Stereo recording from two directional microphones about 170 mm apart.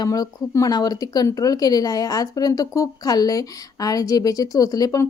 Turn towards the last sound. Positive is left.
turn(degrees=20)  # may be behind; listen again after turning